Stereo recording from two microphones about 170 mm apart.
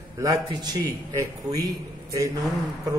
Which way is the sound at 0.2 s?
20° right (ahead or behind).